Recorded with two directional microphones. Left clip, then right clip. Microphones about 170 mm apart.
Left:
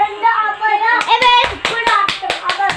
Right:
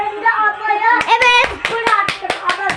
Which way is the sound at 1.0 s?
30° right (ahead or behind).